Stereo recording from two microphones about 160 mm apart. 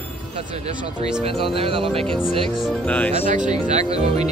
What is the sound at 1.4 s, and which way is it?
Speech, 35° right (ahead or behind).